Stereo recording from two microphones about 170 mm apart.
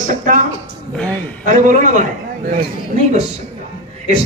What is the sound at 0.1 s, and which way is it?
Speech, 50° right (ahead or behind).